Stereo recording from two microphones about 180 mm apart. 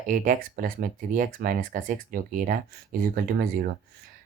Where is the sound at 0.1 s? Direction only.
50° right (ahead or behind).